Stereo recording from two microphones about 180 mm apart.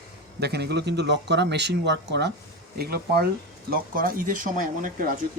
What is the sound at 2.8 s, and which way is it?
Speech, 60° right (ahead or behind).